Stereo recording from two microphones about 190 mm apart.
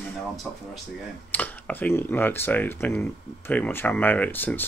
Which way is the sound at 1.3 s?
10° left (ahead or behind).